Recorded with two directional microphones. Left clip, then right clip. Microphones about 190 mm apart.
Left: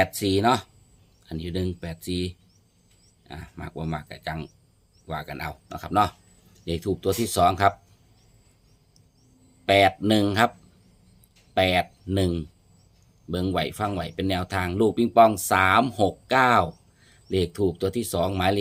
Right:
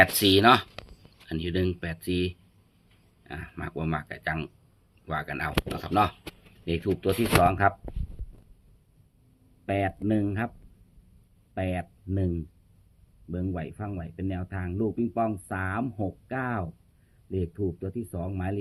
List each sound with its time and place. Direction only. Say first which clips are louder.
0.0 s speech: right 3 dB; 10° left (ahead or behind)
9.6 s speech: left 10 dB; 25° left (ahead or behind)
11.5 s speech: left 11 dB; 20° left (ahead or behind)